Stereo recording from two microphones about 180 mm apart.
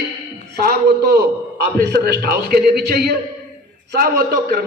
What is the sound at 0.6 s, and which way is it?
A man's voice, 60° right (ahead or behind).